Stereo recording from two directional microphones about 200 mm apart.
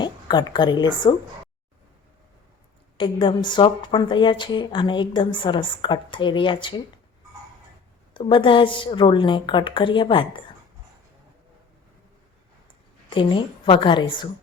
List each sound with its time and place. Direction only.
0.0 s a woman's voice: 20° left (ahead or behind)
3.0 s a woman's voice: 25° left (ahead or behind)
8.1 s a woman's voice: 25° left (ahead or behind)
13.1 s a woman's voice: 25° left (ahead or behind)